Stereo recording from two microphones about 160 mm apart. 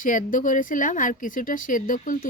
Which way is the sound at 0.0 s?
55° left (ahead or behind).